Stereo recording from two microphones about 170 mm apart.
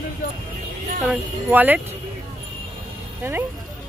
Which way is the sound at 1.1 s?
10° right (ahead or behind).